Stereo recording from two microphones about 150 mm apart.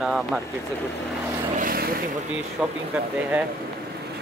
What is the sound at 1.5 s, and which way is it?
Vehicle, 80° right.